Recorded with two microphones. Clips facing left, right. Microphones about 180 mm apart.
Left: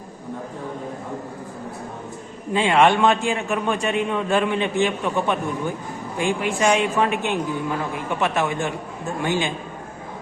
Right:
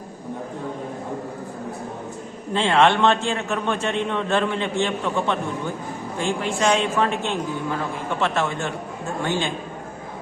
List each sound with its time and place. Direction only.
2.5 s a man's voice: 10° left (ahead or behind)